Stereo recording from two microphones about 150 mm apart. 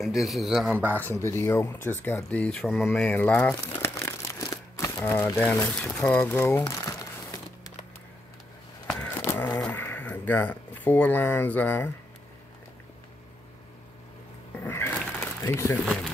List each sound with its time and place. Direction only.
0.0 s a man's voice: centre (ahead or behind)
0.8 s speech: 15° left (ahead or behind)
6.6 s crumpling: 20° left (ahead or behind)
9.0 s a sound: 15° left (ahead or behind)
14.6 s a sound: 15° left (ahead or behind)
15.8 s a man's voice: centre (ahead or behind)